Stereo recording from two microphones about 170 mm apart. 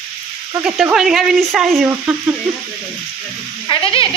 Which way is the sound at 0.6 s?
5° right (ahead or behind).